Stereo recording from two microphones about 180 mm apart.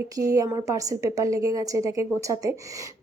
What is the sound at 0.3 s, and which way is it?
A woman's voice, 20° right (ahead or behind).